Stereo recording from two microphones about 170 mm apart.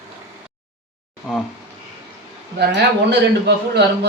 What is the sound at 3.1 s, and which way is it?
Speech, 80° right.